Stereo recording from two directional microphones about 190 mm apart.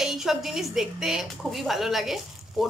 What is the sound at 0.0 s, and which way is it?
A woman's voice, centre (ahead or behind).